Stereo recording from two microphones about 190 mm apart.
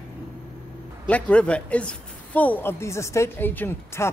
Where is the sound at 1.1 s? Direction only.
5° left (ahead or behind).